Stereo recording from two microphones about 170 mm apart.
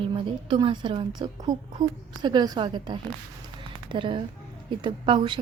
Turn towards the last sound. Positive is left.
turn(degrees=-30)  # may be behind; listen again after turning